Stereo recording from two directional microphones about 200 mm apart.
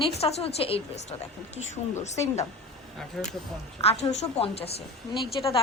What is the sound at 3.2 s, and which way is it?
Speech, centre (ahead or behind).